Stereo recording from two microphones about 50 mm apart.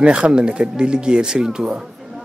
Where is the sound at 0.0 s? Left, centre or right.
Centre.